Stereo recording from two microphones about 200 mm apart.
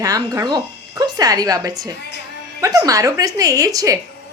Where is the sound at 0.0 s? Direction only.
15° right (ahead or behind).